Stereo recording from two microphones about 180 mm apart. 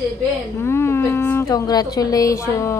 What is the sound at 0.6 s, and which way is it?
A woman's voice, 15° left (ahead or behind).